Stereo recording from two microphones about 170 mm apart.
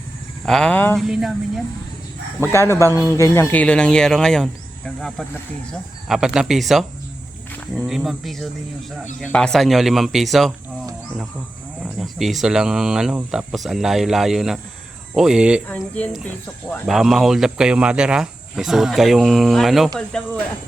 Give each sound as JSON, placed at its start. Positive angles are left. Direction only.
{"t": 0.4, "sound": "speech", "side_deg": 5}
{"t": 0.9, "sound": "speech", "side_deg": 0}
{"t": 2.4, "sound": "speech", "side_deg": 15}
{"t": 6.1, "sound": "speech", "side_deg": -5}
{"t": 11.9, "sound": "speech", "side_deg": 0}
{"t": 15.6, "sound": "speech", "side_deg": 10}